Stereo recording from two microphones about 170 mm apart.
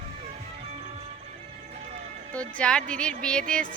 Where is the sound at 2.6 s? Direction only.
5° left (ahead or behind).